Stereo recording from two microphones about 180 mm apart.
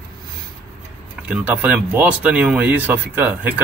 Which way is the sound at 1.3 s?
10° right (ahead or behind).